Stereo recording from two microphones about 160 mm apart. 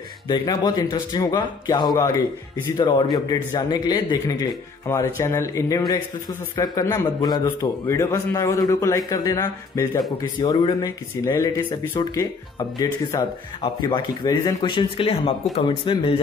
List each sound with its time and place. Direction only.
0.3 s speech: 25° left (ahead or behind)